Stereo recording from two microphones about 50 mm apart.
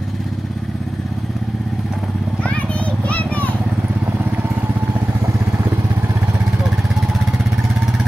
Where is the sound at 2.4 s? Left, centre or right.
Left.